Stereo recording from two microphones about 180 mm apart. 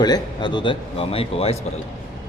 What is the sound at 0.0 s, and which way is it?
Speech, 25° left (ahead or behind).